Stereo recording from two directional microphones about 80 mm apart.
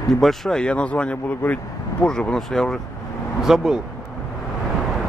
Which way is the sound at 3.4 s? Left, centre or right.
Centre.